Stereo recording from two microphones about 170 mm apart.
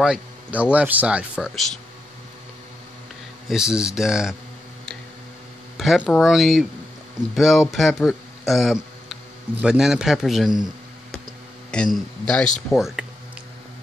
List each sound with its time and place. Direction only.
0.0 s speech: 5° right (ahead or behind)
3.4 s speech: 5° right (ahead or behind)
5.8 s speech: 5° left (ahead or behind)
11.7 s a man's voice: 5° left (ahead or behind)